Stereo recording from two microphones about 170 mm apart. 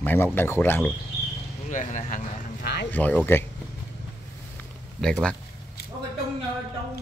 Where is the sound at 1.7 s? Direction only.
45° left (ahead or behind).